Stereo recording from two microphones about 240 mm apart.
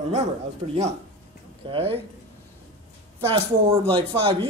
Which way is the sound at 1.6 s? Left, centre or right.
Right.